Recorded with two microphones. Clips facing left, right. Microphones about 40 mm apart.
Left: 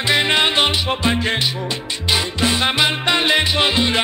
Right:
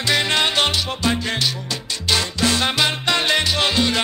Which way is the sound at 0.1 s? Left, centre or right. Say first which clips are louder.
Left 2 dB; left.